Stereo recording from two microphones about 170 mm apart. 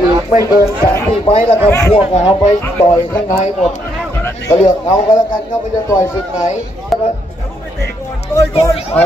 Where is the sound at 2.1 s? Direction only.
40° left (ahead or behind).